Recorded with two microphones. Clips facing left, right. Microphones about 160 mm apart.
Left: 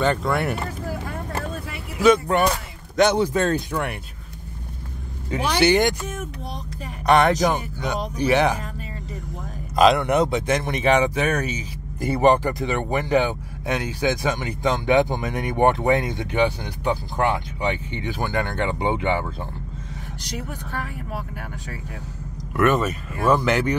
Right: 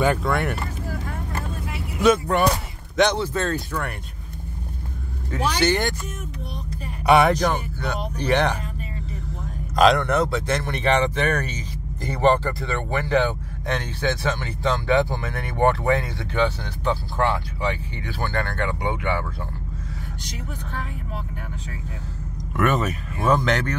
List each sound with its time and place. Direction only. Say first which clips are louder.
0.0 s speech: even; 5° right (ahead or behind)
2.0 s speech: left 2 dB; centre (ahead or behind)
3.2 s speech: left 4 dB; 15° left (ahead or behind)
5.6 s speech: left 5 dB; 15° left (ahead or behind)
7.1 s speech: right 1 dB; 5° right (ahead or behind)
7.3 s speech: left 2 dB; 15° left (ahead or behind)
9.8 s speech: left 1 dB; centre (ahead or behind)
10.0 s speech: left 2 dB; 15° left (ahead or behind)
22.5 s speech: left 2 dB; centre (ahead or behind)